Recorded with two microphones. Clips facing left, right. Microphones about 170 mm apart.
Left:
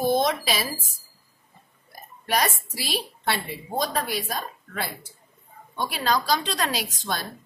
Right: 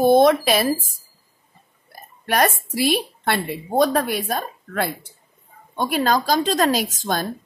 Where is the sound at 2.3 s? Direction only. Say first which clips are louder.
Right 5 dB; 55° right (ahead or behind).